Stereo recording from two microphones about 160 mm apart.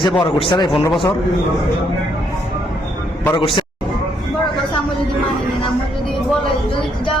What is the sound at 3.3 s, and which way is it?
Speech, 30° left (ahead or behind).